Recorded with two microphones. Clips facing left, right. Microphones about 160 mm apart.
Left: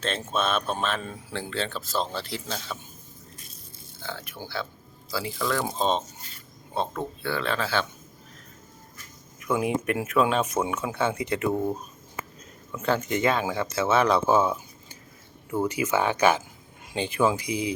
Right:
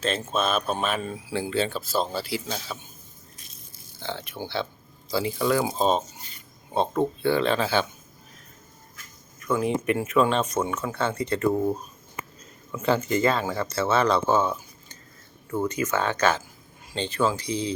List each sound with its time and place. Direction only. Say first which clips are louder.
0.0 s speech: right 2 dB; centre (ahead or behind)
4.0 s speech: right 4 dB; 25° right (ahead or behind); by 6.1 s 10° right (ahead or behind)
6.7 s speech: right 6 dB; 20° right (ahead or behind)
9.4 s speech: right 1 dB; 10° left (ahead or behind)